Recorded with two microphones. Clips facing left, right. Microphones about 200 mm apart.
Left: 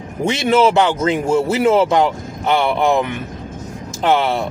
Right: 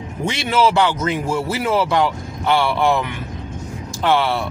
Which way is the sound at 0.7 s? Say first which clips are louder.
Left 3 dB; 25° left (ahead or behind).